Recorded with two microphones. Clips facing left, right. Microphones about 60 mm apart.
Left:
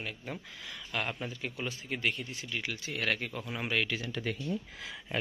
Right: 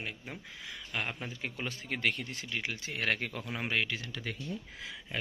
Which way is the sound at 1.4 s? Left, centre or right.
Right.